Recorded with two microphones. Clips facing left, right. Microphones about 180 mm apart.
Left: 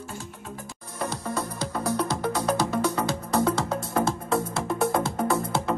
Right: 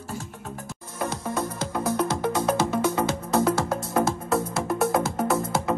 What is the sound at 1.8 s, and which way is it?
Music, centre (ahead or behind).